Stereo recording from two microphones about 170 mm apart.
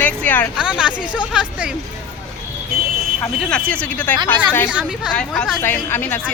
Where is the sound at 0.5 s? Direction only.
5° right (ahead or behind).